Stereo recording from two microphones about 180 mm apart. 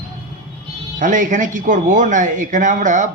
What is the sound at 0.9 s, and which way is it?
A man's voice, 45° right (ahead or behind).